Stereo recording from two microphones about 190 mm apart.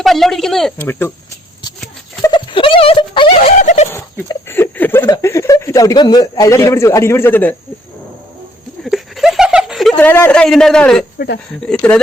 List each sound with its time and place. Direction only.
0.0 s speech: centre (ahead or behind)
2.2 s a sound: 25° left (ahead or behind)
3.6 s speech: 40° left (ahead or behind)
3.9 s speech: 10° left (ahead or behind)
8.8 s a sound: centre (ahead or behind)
11.6 s speech: 5° left (ahead or behind)